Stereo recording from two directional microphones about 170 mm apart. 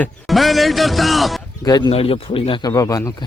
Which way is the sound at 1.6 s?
25° left (ahead or behind).